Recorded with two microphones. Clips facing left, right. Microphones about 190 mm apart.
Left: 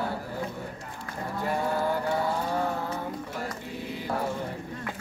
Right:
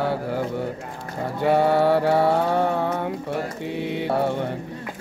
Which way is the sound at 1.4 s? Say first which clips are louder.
Right 10 dB; 75° right (ahead or behind).